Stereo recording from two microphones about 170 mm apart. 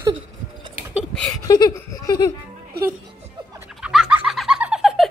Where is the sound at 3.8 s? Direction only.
5° right (ahead or behind).